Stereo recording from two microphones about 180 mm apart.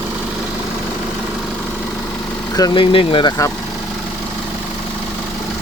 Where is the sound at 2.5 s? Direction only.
25° left (ahead or behind).